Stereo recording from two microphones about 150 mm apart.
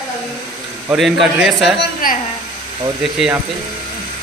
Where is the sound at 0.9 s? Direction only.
Centre (ahead or behind).